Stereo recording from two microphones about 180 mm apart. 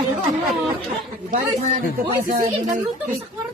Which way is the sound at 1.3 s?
40° right (ahead or behind).